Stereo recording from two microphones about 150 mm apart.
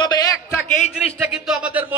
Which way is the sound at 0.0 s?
25° left (ahead or behind).